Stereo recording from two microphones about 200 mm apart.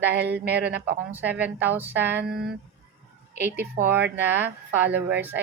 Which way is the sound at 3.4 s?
10° right (ahead or behind).